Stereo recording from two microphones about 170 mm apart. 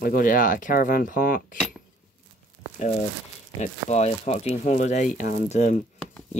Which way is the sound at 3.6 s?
40° left (ahead or behind).